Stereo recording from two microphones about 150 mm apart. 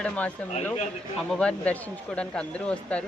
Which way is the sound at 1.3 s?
5° left (ahead or behind).